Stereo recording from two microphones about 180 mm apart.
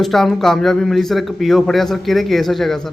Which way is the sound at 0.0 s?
Centre (ahead or behind).